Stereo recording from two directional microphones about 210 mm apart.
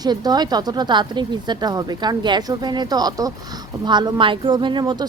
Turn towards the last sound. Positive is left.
turn(degrees=-20)  # may be behind; listen again after turning